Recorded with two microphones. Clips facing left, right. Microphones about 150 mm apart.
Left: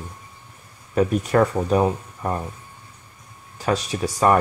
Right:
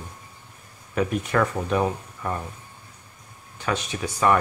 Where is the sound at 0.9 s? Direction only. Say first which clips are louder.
Left 5 dB; 35° left (ahead or behind).